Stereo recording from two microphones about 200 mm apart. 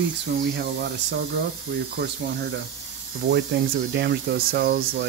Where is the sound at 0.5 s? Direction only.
55° right (ahead or behind).